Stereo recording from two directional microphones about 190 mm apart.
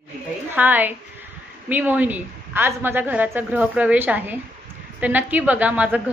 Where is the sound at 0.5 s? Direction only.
10° right (ahead or behind).